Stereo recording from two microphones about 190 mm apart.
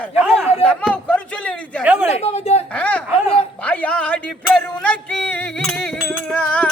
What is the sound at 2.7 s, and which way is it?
Music, 5° left (ahead or behind).